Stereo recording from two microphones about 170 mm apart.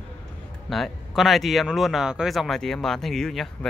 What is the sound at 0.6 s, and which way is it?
Speech, centre (ahead or behind).